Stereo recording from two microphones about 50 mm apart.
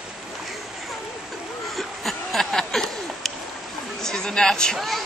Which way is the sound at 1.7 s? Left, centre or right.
Centre.